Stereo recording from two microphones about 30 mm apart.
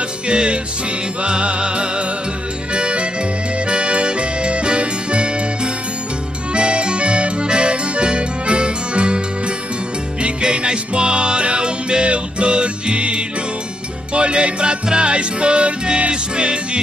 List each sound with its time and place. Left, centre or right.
0.3 s music: right
6.5 s accordion: right
7.4 s music: right
10.4 s music: right